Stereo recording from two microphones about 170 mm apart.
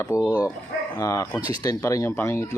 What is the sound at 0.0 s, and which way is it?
Speech, 20° left (ahead or behind).